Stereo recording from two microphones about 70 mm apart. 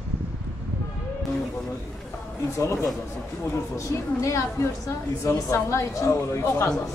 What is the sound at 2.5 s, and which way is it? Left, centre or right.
A woman's voice, left.